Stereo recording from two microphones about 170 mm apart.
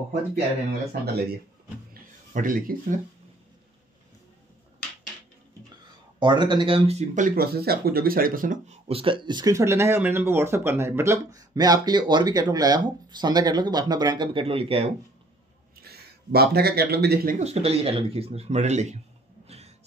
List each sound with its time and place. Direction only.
1.0 s a man's voice: 70° right (ahead or behind)
2.3 s speech: 55° right (ahead or behind)
6.1 s speech: 25° right (ahead or behind); by 8.7 s 50° right (ahead or behind)
8.8 s speech: 30° right (ahead or behind)
15.8 s speech: 70° right (ahead or behind)
17.4 s speech: 35° right (ahead or behind)
19.4 s music: 40° right (ahead or behind)